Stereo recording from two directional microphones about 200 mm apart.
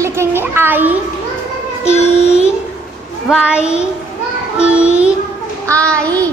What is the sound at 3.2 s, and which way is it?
Child singing, 5° right (ahead or behind).